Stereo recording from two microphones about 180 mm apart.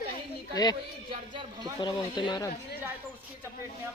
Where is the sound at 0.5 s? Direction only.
20° left (ahead or behind).